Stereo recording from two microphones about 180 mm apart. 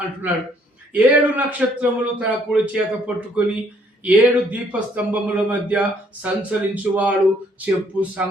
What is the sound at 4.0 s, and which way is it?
A man's voice, 10° right (ahead or behind).